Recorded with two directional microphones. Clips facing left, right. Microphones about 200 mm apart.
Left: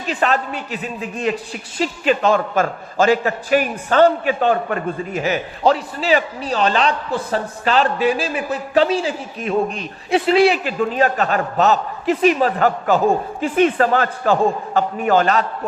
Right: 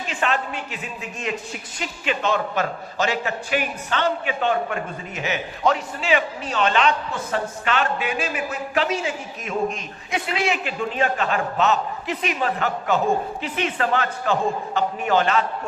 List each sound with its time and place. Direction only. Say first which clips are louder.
0.1 s a man's voice: left 6 dB; 40° left (ahead or behind)